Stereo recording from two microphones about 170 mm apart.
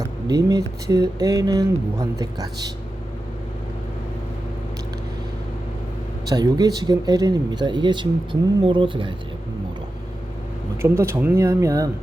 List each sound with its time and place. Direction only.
0.0 s speech: 20° right (ahead or behind)
6.2 s speech: 20° right (ahead or behind)
10.8 s speech: 15° right (ahead or behind)